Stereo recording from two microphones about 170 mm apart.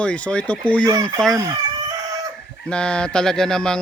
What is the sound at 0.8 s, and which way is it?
Speech, 20° right (ahead or behind).